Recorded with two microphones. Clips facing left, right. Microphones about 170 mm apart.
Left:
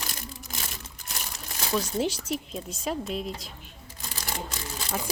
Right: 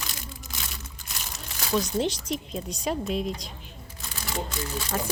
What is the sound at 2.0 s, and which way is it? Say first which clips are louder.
Speech: right 1 dB; 5° left (ahead or behind).